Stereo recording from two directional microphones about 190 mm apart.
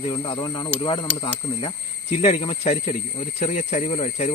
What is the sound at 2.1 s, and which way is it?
Speech, 35° left (ahead or behind).